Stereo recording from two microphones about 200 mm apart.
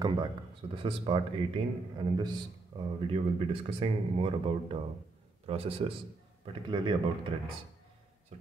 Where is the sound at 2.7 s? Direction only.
15° right (ahead or behind).